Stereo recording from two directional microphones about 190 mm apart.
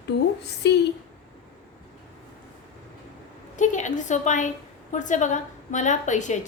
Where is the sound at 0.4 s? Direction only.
65° left (ahead or behind).